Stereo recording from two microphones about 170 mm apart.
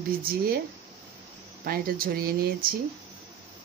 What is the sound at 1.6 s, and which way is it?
Speech, 60° right (ahead or behind).